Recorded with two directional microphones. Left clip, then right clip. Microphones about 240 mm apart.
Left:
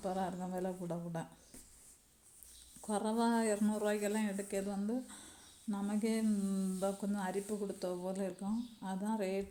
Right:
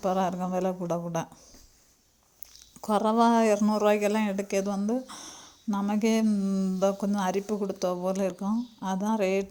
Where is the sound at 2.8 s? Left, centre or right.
Right.